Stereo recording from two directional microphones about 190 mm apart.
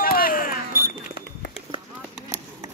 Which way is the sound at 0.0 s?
50° left (ahead or behind).